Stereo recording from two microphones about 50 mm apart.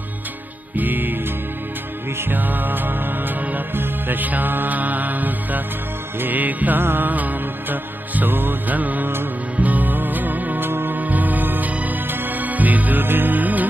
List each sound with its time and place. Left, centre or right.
0.7 s music: right
6.8 s music: right
7.1 s music: right